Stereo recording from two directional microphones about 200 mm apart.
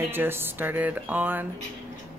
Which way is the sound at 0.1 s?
10° right (ahead or behind).